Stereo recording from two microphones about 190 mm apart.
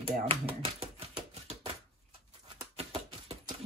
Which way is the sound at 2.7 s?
35° right (ahead or behind).